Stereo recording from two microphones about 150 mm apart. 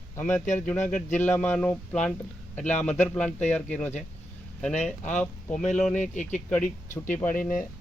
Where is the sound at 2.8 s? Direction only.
5° left (ahead or behind).